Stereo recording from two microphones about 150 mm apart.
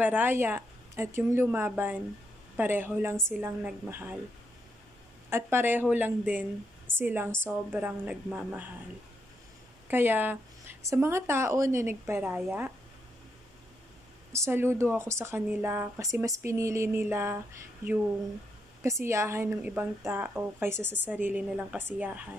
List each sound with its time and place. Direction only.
0.0 s a woman's voice: 10° right (ahead or behind)
5.3 s a woman's voice: 15° right (ahead or behind)
9.8 s a woman's voice: 15° right (ahead or behind)
14.3 s a woman's voice: 15° right (ahead or behind)
18.8 s a woman's voice: 20° right (ahead or behind)